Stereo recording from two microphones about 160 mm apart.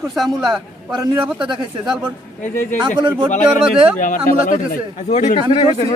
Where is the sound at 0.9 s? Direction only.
25° right (ahead or behind).